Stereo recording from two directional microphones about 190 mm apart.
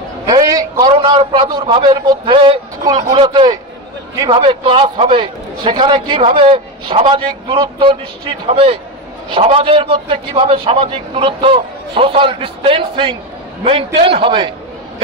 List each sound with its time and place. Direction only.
0.3 s a man's voice: 20° right (ahead or behind)